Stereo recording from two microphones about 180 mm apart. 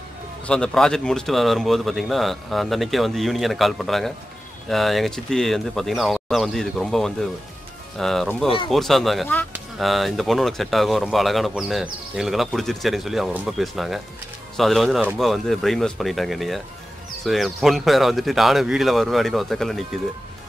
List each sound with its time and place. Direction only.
0.5 s speech: 5° left (ahead or behind)